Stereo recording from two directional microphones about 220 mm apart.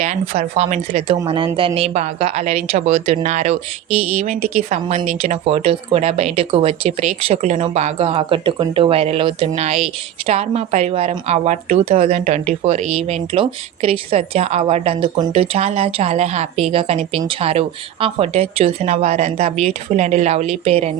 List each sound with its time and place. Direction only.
0.0 s a woman's voice: 30° right (ahead or behind)